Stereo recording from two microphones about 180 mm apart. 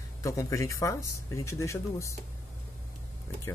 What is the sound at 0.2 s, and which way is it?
Speech, 15° left (ahead or behind).